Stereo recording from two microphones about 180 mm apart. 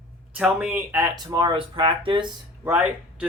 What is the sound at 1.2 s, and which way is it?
Speech, 25° right (ahead or behind).